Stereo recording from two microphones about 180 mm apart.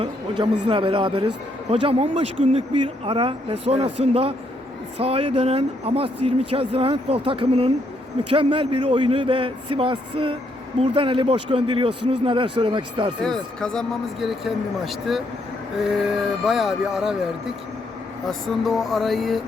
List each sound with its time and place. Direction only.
0.0 s speech: 30° right (ahead or behind)
13.2 s speech: 5° left (ahead or behind)
18.3 s speech: centre (ahead or behind)